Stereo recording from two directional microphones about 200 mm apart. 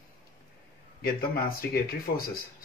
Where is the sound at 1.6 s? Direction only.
50° left (ahead or behind).